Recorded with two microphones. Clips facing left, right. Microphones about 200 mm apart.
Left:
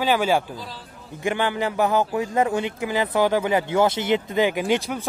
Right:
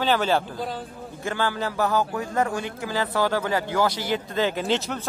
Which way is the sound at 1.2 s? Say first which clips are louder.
Left 3 dB; 15° left (ahead or behind).